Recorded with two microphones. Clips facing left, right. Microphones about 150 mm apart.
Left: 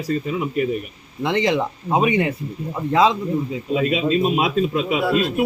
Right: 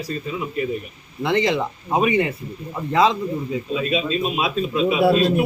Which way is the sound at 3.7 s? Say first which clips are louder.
Left 4 dB; 50° left (ahead or behind).